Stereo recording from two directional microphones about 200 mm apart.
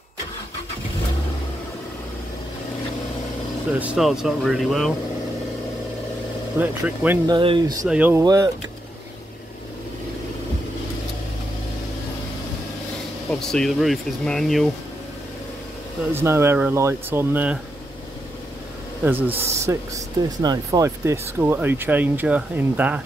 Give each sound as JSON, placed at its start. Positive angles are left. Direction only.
{"t": 3.7, "sound": "speech", "side_deg": -5}
{"t": 6.6, "sound": "speech", "side_deg": -10}
{"t": 7.2, "sound": "speech", "side_deg": -25}
{"t": 7.8, "sound": "speech", "side_deg": -5}
{"t": 13.3, "sound": "speech", "side_deg": 5}
{"t": 16.1, "sound": "speech", "side_deg": -10}
{"t": 19.0, "sound": "speech", "side_deg": -10}